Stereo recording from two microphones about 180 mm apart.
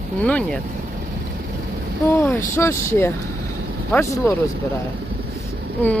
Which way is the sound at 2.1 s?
15° left (ahead or behind).